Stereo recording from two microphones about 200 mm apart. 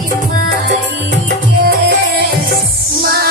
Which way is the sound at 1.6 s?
50° right (ahead or behind).